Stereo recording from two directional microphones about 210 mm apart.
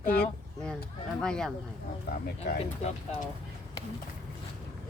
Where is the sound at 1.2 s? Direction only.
5° left (ahead or behind).